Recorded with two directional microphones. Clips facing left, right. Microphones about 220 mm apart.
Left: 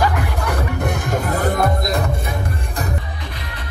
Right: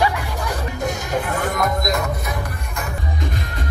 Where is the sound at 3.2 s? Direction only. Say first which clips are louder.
Right 5 dB; 45° right (ahead or behind).